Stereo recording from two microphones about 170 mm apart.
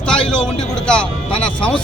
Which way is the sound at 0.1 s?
5° left (ahead or behind).